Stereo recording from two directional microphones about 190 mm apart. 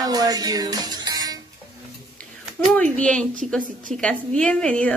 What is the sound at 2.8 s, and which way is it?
A woman's voice, 5° left (ahead or behind).